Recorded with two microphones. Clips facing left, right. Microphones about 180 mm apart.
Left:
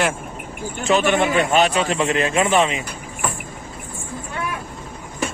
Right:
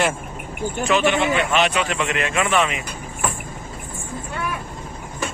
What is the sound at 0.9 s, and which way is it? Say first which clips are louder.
A man's voice: left 2 dB; 50° left (ahead or behind).